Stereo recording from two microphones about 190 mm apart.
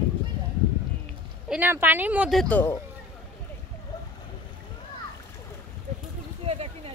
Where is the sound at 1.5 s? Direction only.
10° right (ahead or behind).